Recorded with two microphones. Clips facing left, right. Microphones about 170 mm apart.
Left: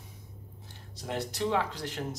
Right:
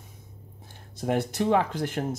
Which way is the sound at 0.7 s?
55° right (ahead or behind).